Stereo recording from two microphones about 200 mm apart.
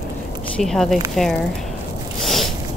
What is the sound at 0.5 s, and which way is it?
Speech, centre (ahead or behind).